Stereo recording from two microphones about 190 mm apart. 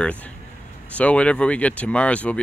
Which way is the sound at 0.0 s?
10° left (ahead or behind).